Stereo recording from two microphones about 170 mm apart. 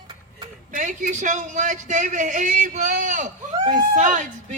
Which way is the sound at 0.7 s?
50° right (ahead or behind).